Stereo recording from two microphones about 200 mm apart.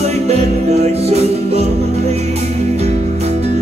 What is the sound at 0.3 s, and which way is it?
Music, 30° right (ahead or behind).